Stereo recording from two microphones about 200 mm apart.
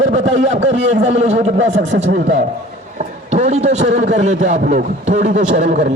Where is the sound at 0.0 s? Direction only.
35° right (ahead or behind).